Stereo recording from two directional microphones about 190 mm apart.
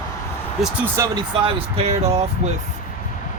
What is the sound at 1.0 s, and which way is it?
Speech, 15° right (ahead or behind).